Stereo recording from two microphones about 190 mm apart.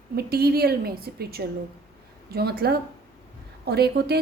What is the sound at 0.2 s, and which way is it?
A woman's voice, 55° right (ahead or behind).